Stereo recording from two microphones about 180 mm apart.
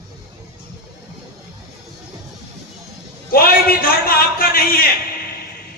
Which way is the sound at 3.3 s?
55° left (ahead or behind).